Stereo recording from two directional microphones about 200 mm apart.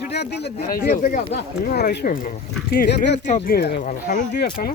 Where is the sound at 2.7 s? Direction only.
55° left (ahead or behind).